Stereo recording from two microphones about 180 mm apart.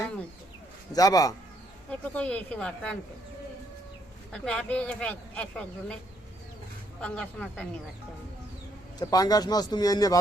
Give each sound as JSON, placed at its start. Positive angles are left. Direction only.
{"t": 0.9, "sound": "a man's voice", "side_deg": 20}
{"t": 1.9, "sound": "speech", "side_deg": 10}
{"t": 4.3, "sound": "speech", "side_deg": 5}
{"t": 7.0, "sound": "speech", "side_deg": 5}
{"t": 9.0, "sound": "a man's voice", "side_deg": 20}